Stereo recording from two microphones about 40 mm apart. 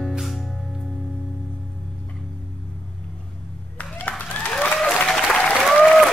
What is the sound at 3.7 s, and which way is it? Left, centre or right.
Clapping, left.